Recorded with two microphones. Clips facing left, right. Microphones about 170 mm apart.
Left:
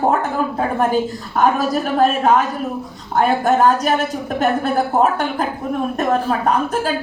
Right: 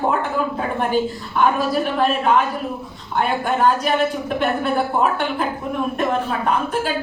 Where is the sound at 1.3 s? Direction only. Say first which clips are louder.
Left 2 dB; 45° left (ahead or behind).